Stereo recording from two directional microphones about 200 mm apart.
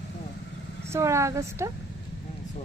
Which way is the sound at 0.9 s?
15° right (ahead or behind).